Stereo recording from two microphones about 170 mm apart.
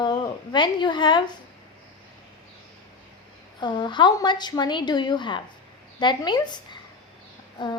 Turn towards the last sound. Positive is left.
turn(degrees=25)  # may be behind; listen again after turning